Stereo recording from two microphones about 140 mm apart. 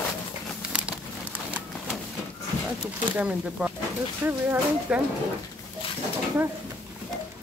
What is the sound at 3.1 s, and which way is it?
Speech, 5° right (ahead or behind).